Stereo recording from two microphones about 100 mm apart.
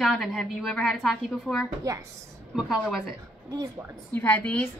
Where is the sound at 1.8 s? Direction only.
35° right (ahead or behind).